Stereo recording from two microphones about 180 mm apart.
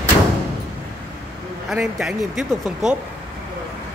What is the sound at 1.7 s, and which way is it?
Speech, centre (ahead or behind).